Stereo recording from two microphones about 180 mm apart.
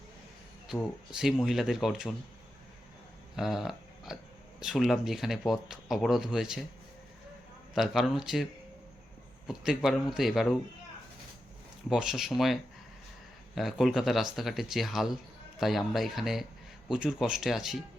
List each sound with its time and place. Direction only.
1.1 s speech: centre (ahead or behind)
3.3 s a sound: centre (ahead or behind)
4.6 s speech: centre (ahead or behind)
7.7 s speech: centre (ahead or behind)
9.5 s speech: centre (ahead or behind)
11.9 s speech: 5° right (ahead or behind)
13.6 s speech: centre (ahead or behind)